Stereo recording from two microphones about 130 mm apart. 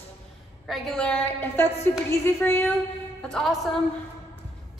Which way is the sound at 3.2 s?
Centre (ahead or behind).